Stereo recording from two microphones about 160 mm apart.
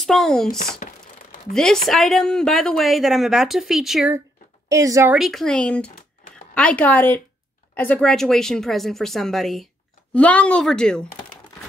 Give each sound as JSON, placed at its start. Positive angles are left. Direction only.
{"t": 0.0, "sound": "speech", "side_deg": 0}
{"t": 0.8, "sound": "a sound", "side_deg": 55}
{"t": 1.5, "sound": "speech", "side_deg": 5}
{"t": 4.6, "sound": "a woman's voice", "side_deg": -20}
{"t": 5.1, "sound": "speech", "side_deg": 0}